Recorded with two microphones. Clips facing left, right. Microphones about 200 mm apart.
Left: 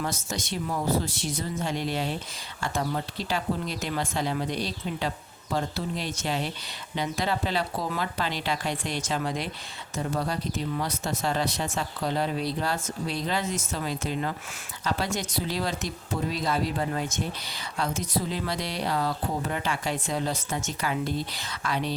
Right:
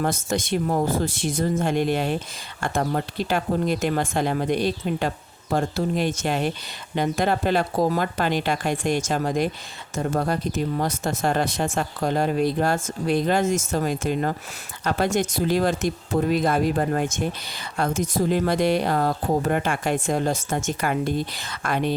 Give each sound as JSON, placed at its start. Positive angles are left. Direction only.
{"t": 0.0, "sound": "speech", "side_deg": -55}